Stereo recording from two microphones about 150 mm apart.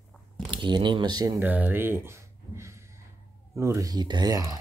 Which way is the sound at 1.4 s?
10° right (ahead or behind).